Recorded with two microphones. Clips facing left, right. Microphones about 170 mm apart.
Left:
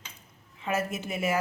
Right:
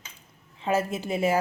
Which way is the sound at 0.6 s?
30° right (ahead or behind).